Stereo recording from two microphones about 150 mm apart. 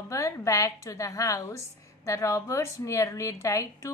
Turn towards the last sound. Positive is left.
turn(degrees=20)  # may be behind; listen again after turning